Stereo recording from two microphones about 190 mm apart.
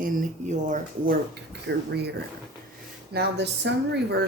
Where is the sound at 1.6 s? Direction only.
60° right (ahead or behind).